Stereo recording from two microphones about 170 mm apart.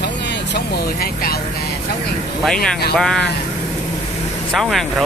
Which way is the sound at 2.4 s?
Centre (ahead or behind).